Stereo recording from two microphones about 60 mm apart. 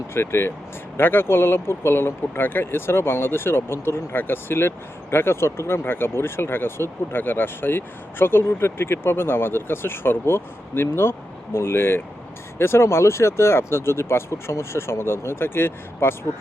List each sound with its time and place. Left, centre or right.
0.1 s speech: left